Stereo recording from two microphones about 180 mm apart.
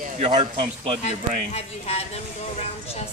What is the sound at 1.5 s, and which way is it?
Speech, 35° left (ahead or behind).